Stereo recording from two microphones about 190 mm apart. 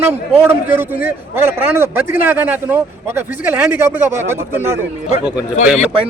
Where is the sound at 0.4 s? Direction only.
10° right (ahead or behind).